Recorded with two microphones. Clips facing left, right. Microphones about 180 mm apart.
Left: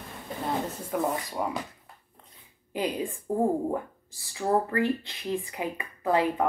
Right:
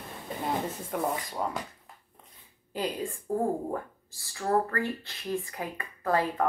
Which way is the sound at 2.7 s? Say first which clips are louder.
Left 2 dB; 15° left (ahead or behind).